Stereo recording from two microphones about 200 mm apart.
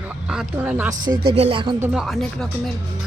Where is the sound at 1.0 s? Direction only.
45° right (ahead or behind).